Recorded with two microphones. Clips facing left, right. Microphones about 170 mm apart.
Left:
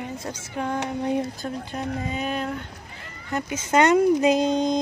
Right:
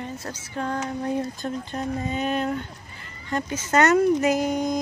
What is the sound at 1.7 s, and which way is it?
Speech, centre (ahead or behind).